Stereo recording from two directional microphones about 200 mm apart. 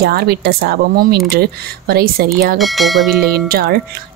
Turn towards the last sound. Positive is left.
turn(degrees=-50)  # may be behind; listen again after turning